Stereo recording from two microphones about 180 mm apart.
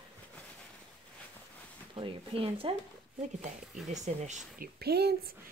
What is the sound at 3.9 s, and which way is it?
Speech, 40° right (ahead or behind).